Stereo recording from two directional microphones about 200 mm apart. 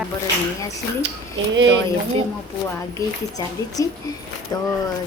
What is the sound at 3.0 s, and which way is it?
Speech, 20° left (ahead or behind).